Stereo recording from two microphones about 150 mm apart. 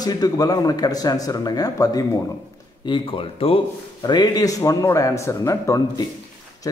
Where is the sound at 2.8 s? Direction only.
35° left (ahead or behind).